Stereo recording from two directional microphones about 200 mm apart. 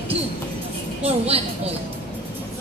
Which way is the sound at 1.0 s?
30° right (ahead or behind).